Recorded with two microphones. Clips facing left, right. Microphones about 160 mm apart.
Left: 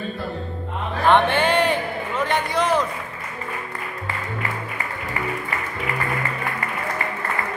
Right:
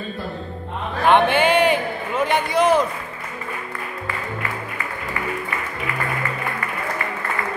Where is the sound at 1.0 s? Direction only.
10° right (ahead or behind).